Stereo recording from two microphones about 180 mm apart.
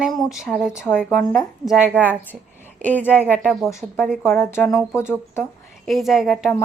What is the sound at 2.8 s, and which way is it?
Speech, 10° left (ahead or behind).